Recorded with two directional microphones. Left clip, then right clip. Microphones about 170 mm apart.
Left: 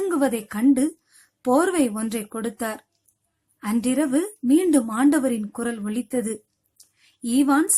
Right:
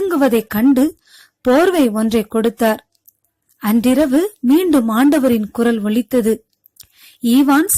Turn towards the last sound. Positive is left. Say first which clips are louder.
# right 7 dB
turn(degrees=-35)  # may be behind; listen again after turning